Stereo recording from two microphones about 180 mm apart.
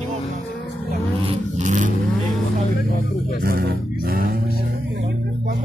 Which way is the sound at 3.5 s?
55° right (ahead or behind).